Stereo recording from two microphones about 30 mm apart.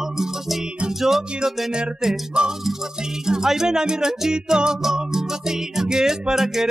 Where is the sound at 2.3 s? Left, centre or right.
Right.